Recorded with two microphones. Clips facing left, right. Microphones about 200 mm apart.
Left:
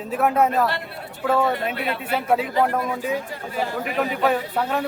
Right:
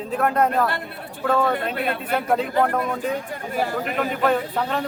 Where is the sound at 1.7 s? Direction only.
50° right (ahead or behind).